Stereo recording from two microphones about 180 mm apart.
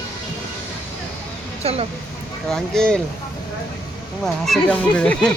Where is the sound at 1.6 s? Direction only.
35° right (ahead or behind).